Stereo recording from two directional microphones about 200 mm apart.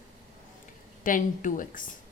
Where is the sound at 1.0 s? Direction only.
40° left (ahead or behind).